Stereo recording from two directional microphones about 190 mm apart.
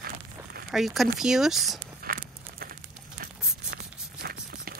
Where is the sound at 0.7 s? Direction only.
Centre (ahead or behind).